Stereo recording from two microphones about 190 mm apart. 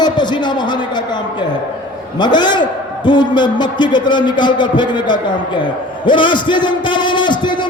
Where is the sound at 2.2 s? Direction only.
25° left (ahead or behind).